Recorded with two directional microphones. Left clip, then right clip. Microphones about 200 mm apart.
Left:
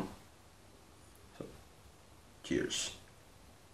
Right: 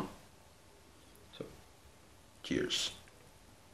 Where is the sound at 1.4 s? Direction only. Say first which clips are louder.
Right 1 dB; 15° right (ahead or behind).